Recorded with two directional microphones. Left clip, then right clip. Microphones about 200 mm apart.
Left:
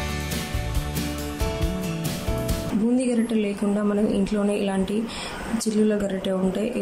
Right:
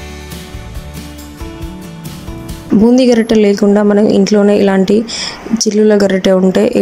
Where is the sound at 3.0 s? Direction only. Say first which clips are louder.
Right 15 dB; 40° right (ahead or behind).